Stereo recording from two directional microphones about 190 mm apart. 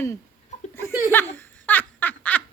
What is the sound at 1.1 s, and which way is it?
Speech, 10° left (ahead or behind).